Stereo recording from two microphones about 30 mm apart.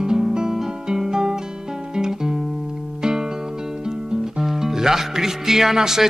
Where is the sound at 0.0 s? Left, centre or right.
Right.